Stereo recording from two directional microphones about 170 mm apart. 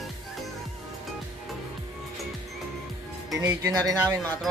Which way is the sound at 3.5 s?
15° right (ahead or behind).